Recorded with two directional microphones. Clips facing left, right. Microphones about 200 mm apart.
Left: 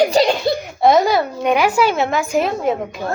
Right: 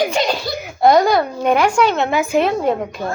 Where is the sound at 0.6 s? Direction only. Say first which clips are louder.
Right 2 dB; centre (ahead or behind).